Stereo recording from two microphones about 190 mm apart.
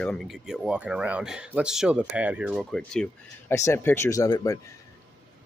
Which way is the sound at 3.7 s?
15° left (ahead or behind).